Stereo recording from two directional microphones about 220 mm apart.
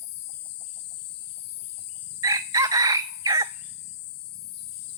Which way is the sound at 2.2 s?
15° right (ahead or behind).